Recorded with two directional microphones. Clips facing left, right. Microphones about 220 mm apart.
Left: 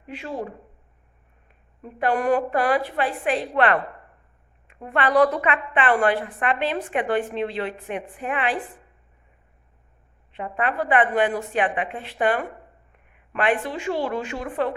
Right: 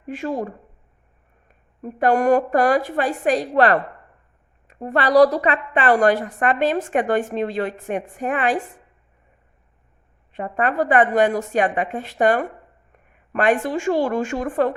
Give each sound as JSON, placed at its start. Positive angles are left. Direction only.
{"t": 0.1, "sound": "a woman's voice", "side_deg": -45}
{"t": 10.3, "sound": "a woman's voice", "side_deg": -45}